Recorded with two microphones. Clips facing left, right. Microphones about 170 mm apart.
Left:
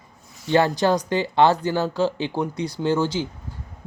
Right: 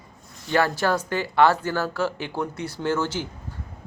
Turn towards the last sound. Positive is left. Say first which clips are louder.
# left 3 dB
turn(degrees=15)  # may be behind; listen again after turning